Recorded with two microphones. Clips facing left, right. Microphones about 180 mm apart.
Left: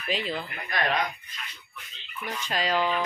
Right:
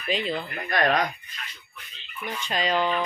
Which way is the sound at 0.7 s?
45° right (ahead or behind).